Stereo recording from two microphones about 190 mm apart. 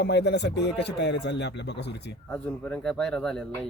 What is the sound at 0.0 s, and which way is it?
Speech, 65° left (ahead or behind).